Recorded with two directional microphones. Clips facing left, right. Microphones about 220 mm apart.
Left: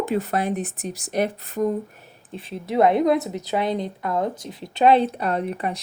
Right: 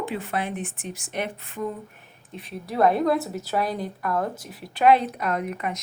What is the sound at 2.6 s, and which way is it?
A woman's voice, 20° left (ahead or behind).